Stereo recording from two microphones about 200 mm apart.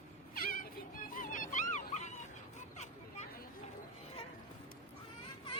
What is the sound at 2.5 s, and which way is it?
Vehicle, 35° left (ahead or behind).